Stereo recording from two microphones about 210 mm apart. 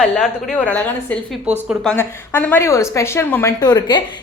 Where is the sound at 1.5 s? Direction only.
30° right (ahead or behind).